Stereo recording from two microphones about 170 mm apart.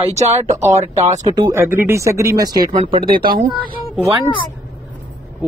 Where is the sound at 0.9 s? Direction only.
40° right (ahead or behind).